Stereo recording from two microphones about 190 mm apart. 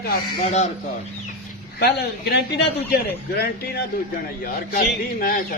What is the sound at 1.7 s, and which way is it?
A man's voice, 55° left (ahead or behind).